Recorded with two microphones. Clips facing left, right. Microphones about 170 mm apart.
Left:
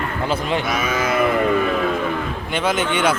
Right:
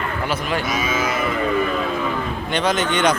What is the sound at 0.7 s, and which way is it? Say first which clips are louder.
Cattle: left 2 dB; 60° left (ahead or behind).